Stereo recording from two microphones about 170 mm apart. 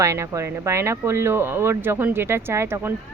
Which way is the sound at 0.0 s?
15° right (ahead or behind).